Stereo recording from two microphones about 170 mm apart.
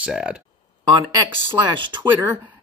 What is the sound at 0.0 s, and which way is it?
Speech, 5° right (ahead or behind).